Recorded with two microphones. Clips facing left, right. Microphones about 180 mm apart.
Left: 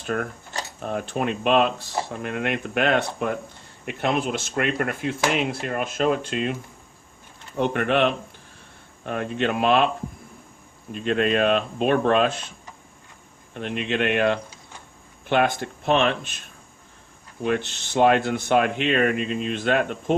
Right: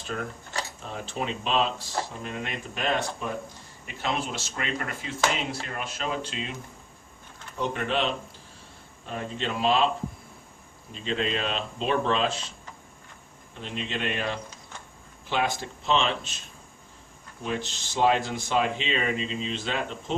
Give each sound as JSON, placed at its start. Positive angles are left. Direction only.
{"t": 0.0, "sound": "speech", "side_deg": 60}
{"t": 10.9, "sound": "speech", "side_deg": 55}
{"t": 17.4, "sound": "speech", "side_deg": 60}